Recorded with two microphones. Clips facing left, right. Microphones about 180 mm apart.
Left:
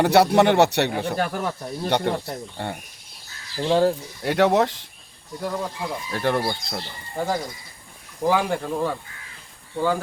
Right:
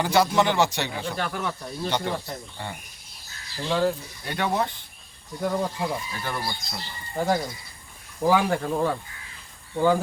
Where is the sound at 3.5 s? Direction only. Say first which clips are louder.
Left 5 dB; 35° left (ahead or behind).